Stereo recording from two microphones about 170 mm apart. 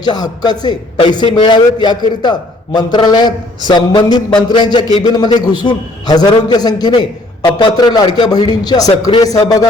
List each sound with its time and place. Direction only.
0.0 s a man's voice: 25° left (ahead or behind)